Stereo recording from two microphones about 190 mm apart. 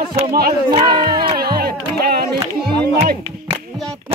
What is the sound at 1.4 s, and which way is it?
Music, 55° right (ahead or behind).